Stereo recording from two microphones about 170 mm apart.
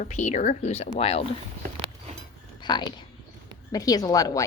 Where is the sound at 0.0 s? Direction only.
45° left (ahead or behind).